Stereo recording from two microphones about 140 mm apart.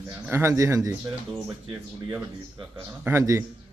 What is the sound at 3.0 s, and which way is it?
Speech, 20° right (ahead or behind).